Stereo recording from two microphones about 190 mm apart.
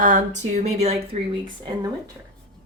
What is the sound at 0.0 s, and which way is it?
Speech, 40° right (ahead or behind).